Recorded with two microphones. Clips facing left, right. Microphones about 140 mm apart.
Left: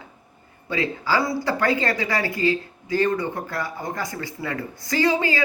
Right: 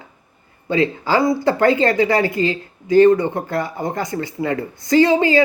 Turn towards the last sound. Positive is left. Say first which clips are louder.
# right 8 dB
turn(degrees=-25)  # may be behind; listen again after turning